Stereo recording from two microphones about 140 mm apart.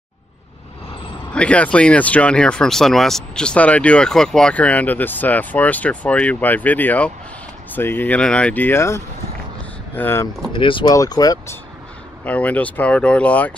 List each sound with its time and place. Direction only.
1.3 s speech: 10° left (ahead or behind)
10.5 s speech: 35° left (ahead or behind)
10.9 s speech: 25° left (ahead or behind)
12.3 s speech: 10° left (ahead or behind)